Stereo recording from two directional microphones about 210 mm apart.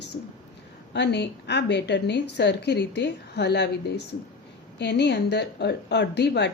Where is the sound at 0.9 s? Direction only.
55° left (ahead or behind).